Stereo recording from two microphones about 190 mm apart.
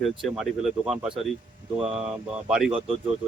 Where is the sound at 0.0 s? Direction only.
Centre (ahead or behind).